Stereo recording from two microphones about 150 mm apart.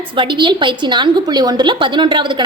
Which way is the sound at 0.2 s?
35° right (ahead or behind).